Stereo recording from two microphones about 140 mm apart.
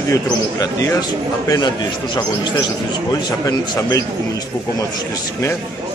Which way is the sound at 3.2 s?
30° left (ahead or behind).